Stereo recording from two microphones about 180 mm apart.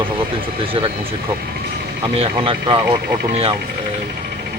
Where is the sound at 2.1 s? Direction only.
30° right (ahead or behind).